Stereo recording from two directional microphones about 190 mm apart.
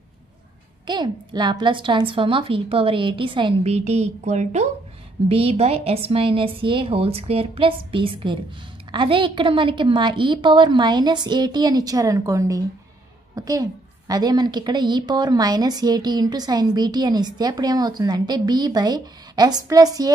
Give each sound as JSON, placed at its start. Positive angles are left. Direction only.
{"t": 0.8, "sound": "a woman's voice", "side_deg": -25}